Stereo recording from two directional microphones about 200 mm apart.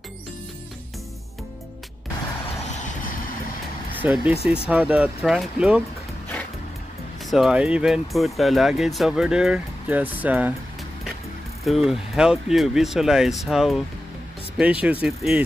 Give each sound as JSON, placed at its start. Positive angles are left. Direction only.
{"t": 2.7, "sound": "vehicle", "side_deg": 40}
{"t": 4.0, "sound": "speech", "side_deg": -5}
{"t": 7.2, "sound": "speech", "side_deg": 0}
{"t": 11.6, "sound": "speech", "side_deg": 0}